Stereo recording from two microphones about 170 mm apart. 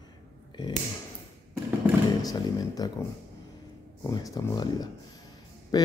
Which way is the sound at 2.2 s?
20° left (ahead or behind).